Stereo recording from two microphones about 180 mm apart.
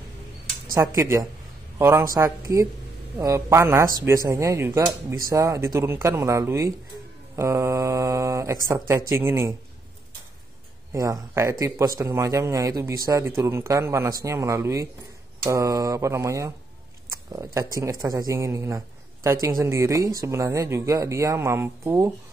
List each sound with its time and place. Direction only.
0.7 s speech: 15° right (ahead or behind)
10.9 s speech: 15° right (ahead or behind)
17.1 s a sound: 20° right (ahead or behind)
17.6 s speech: 15° right (ahead or behind)